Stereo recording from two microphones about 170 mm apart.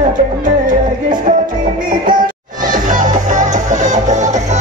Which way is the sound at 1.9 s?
55° right (ahead or behind).